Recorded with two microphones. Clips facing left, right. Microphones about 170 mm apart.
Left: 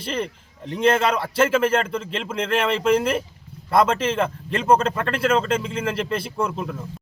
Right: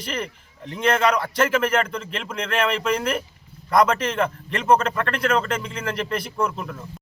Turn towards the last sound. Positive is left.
turn(degrees=30)  # may be behind; listen again after turning